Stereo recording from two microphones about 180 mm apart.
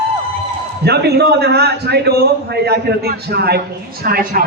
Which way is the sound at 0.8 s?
65° right (ahead or behind).